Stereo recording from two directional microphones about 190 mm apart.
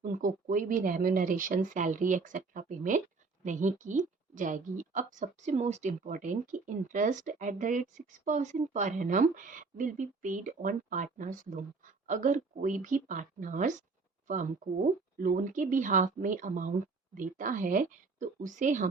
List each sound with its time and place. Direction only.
0.0 s a woman's voice: 45° right (ahead or behind)
15.2 s speech: 40° right (ahead or behind)